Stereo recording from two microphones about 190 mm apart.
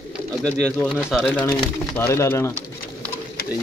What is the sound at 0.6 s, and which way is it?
Speech, 5° left (ahead or behind).